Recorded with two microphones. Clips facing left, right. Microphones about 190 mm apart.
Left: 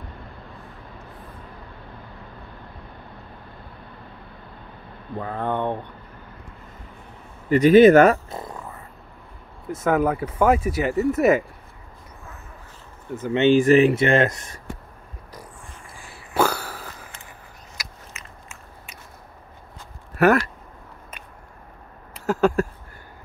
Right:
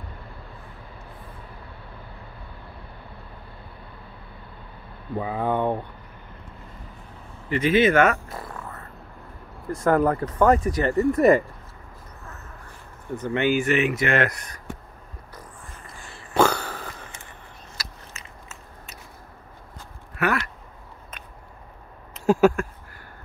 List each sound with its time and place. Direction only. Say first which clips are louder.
5.1 s speech: right 1 dB; 10° right (ahead or behind)
7.4 s speech: left 8 dB; 40° left (ahead or behind)
8.3 s a sound: left 2 dB; 20° left (ahead or behind)
9.7 s speech: right 1 dB; centre (ahead or behind)
13.3 s speech: left 7 dB; 25° left (ahead or behind)
16.3 s a sound: right 2 dB; 5° left (ahead or behind)
17.7 s biting: left 1 dB; 15° left (ahead or behind)
20.2 s speech: left 8 dB; 40° left (ahead or behind)
22.2 s a sound: right 3 dB; 15° right (ahead or behind)